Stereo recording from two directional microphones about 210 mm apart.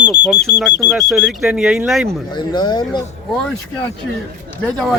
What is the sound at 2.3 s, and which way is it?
Speech, 20° left (ahead or behind).